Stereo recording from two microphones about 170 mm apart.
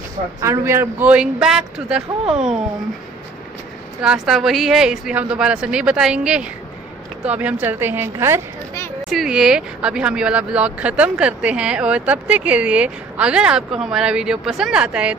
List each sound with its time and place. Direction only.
0.4 s speech: 15° right (ahead or behind)
2.2 s speech: 40° right (ahead or behind)
4.0 s speech: 5° right (ahead or behind)
9.1 s speech: centre (ahead or behind)